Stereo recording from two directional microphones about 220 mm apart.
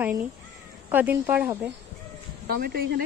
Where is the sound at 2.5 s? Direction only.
45° right (ahead or behind).